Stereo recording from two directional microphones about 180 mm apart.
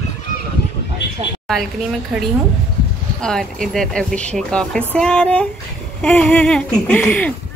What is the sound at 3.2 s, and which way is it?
Speech, 5° left (ahead or behind).